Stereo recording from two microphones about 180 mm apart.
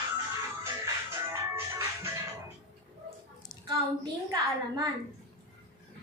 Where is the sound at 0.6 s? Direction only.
15° right (ahead or behind).